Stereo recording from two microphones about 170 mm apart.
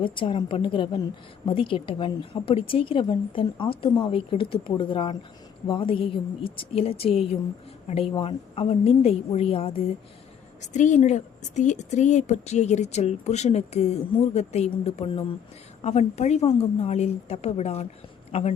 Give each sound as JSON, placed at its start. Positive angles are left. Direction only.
{"t": 0.0, "sound": "a woman's voice", "side_deg": 30}
{"t": 10.6, "sound": "a woman's voice", "side_deg": 45}